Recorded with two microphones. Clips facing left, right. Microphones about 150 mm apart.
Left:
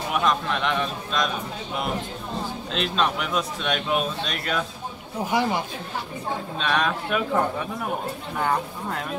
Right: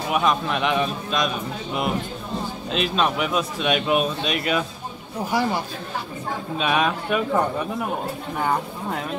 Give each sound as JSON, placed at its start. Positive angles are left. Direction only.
{"t": 0.1, "sound": "a man's voice", "side_deg": -5}
{"t": 2.7, "sound": "a man's voice", "side_deg": -5}
{"t": 5.3, "sound": "speech", "side_deg": 20}
{"t": 6.6, "sound": "a man's voice", "side_deg": -5}